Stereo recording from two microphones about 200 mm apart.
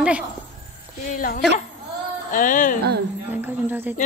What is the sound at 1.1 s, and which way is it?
A woman's voice, 45° left (ahead or behind).